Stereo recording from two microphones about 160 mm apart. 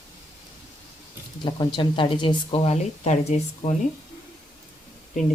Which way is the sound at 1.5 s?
30° left (ahead or behind).